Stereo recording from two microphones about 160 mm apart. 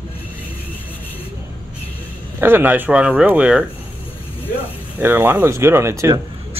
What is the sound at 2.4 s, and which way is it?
Speech, 15° right (ahead or behind).